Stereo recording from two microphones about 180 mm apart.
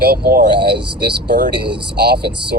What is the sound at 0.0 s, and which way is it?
Speech, 60° right (ahead or behind).